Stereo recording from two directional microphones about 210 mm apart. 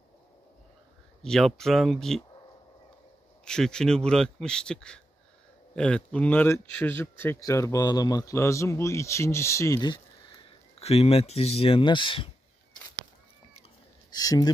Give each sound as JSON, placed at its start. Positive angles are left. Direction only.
{"t": 1.2, "sound": "a man's voice", "side_deg": 0}
{"t": 3.4, "sound": "a man's voice", "side_deg": 5}
{"t": 14.1, "sound": "speech", "side_deg": 15}